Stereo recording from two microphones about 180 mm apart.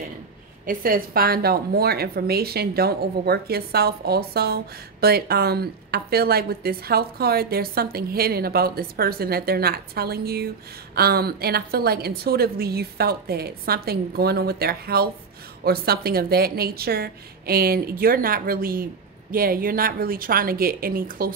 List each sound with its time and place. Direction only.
0.7 s speech: 55° right (ahead or behind)